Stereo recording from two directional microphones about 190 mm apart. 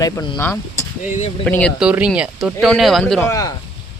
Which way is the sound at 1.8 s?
5° right (ahead or behind).